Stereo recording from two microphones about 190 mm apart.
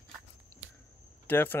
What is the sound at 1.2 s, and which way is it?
Speech, 10° left (ahead or behind).